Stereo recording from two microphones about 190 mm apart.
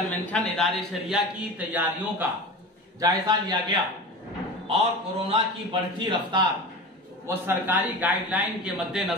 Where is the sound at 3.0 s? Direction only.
20° right (ahead or behind).